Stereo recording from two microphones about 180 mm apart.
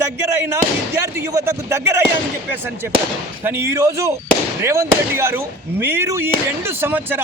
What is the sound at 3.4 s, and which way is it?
Speech, 15° right (ahead or behind).